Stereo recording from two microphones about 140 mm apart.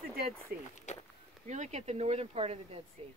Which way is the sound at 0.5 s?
90° right.